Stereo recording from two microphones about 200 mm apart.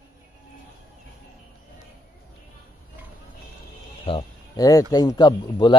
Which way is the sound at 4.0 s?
25° left (ahead or behind).